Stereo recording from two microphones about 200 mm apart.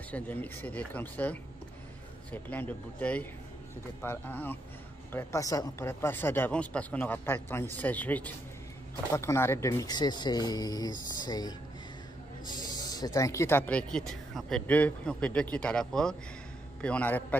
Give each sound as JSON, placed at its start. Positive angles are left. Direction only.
{"t": 0.1, "sound": "a woman's voice", "side_deg": 10}
{"t": 12.8, "sound": "a woman's voice", "side_deg": 20}